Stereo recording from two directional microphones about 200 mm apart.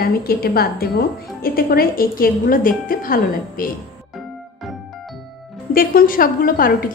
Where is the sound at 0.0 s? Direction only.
50° left (ahead or behind).